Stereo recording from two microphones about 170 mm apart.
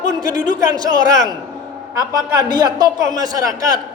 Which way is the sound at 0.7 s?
25° right (ahead or behind).